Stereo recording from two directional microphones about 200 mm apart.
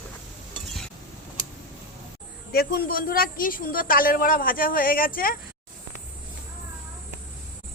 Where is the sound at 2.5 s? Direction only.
50° left (ahead or behind).